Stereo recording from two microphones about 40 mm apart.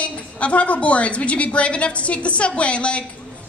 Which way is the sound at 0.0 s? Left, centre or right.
Left.